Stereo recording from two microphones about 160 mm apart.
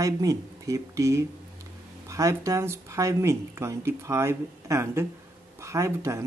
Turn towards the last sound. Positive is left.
turn(degrees=-20)  # may be behind; listen again after turning